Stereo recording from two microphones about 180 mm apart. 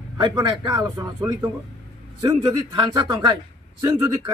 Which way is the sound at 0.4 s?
25° right (ahead or behind).